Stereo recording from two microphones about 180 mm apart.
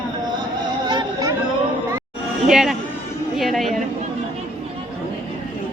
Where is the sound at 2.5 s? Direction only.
Centre (ahead or behind).